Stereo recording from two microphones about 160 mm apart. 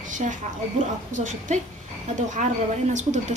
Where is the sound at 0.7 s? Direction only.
50° right (ahead or behind).